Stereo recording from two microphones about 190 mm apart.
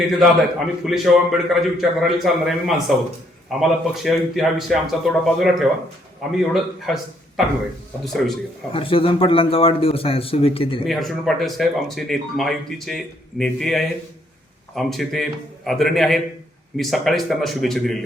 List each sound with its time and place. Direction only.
0.0 s a man's voice: centre (ahead or behind)
8.7 s a man's voice: 30° left (ahead or behind)
10.8 s speech: centre (ahead or behind)